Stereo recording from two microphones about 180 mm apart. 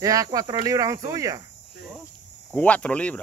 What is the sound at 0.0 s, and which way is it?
Speech, 20° right (ahead or behind).